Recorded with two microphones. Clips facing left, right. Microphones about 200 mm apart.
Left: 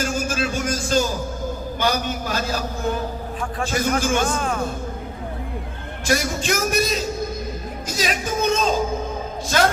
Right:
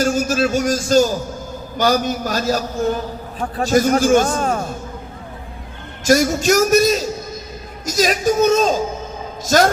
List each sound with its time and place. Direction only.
0.0 s music: 40° right (ahead or behind)
1.8 s a man's voice: 40° right (ahead or behind)
6.1 s a man's voice: 40° right (ahead or behind)